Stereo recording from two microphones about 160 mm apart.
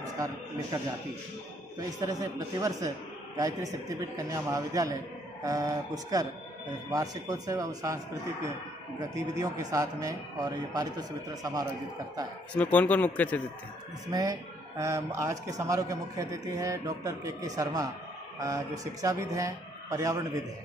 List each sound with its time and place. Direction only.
0.0 s a man's voice: 20° right (ahead or behind)
2.0 s a man's voice: 20° right (ahead or behind)
9.1 s a man's voice: 20° right (ahead or behind)
12.5 s speech: 10° left (ahead or behind)
14.1 s a man's voice: 25° right (ahead or behind)